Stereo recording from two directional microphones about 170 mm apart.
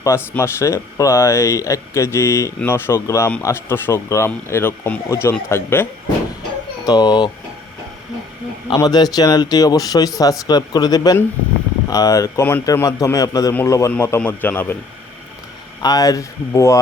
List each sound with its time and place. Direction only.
0.0 s speech: 15° left (ahead or behind)
8.7 s speech: 25° left (ahead or behind)
15.8 s speech: 20° left (ahead or behind)